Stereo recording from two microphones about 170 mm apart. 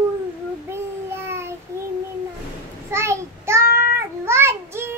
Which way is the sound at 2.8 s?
15° right (ahead or behind).